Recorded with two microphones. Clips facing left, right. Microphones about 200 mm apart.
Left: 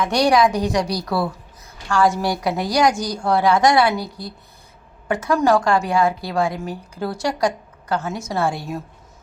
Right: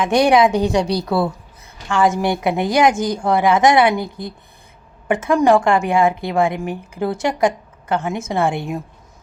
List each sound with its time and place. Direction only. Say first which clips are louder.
0.1 s a woman's voice: right 4 dB; 25° right (ahead or behind)